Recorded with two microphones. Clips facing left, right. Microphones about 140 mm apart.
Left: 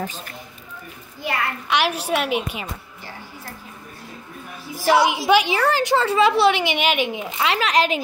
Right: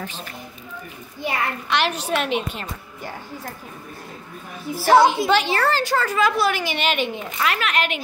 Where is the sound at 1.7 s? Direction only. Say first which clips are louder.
Left 2 dB; 10° left (ahead or behind).